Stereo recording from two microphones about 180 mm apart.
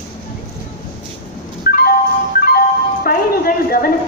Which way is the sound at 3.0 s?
55° left (ahead or behind).